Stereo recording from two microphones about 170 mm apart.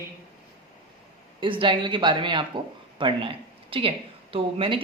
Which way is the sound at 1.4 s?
30° right (ahead or behind).